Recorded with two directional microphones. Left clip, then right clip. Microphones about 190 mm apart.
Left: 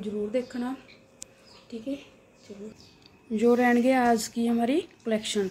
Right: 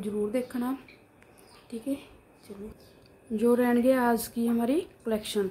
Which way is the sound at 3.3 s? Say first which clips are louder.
Left 2 dB; centre (ahead or behind).